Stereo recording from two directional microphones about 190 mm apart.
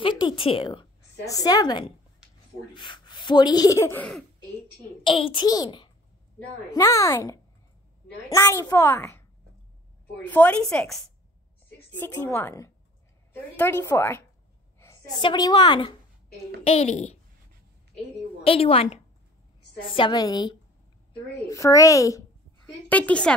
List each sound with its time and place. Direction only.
0.0 s a sound: 25° left (ahead or behind)
1.2 s a child's voice: 20° left (ahead or behind)
5.0 s a child's voice: 25° left (ahead or behind)
18.4 s a child's voice: 30° left (ahead or behind); by 23.3 s 5° left (ahead or behind)